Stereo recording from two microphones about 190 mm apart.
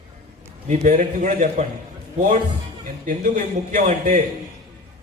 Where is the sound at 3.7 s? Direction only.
40° right (ahead or behind).